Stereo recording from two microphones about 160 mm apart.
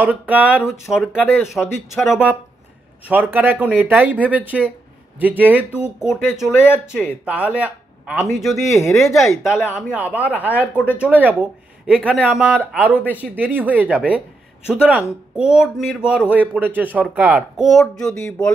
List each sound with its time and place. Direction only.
0.0 s speech: 10° right (ahead or behind)
3.1 s speech: 10° right (ahead or behind)
8.7 s speech: 15° left (ahead or behind)
9.8 s speech: 10° right (ahead or behind)